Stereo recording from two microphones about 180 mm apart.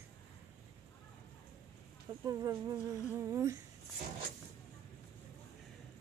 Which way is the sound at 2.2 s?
20° right (ahead or behind).